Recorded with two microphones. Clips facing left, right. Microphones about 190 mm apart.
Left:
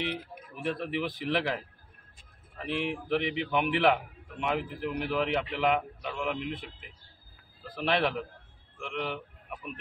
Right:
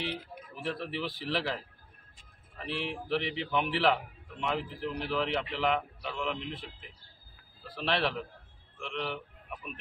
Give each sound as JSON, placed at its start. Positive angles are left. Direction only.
{"t": 0.6, "sound": "a man's voice", "side_deg": 15}
{"t": 2.6, "sound": "a man's voice", "side_deg": 15}
{"t": 7.7, "sound": "a man's voice", "side_deg": 15}